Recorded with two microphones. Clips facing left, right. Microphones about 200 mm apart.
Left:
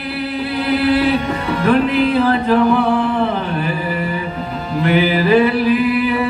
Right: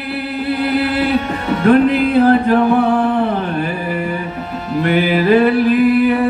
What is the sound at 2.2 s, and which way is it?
Singing, 50° right (ahead or behind).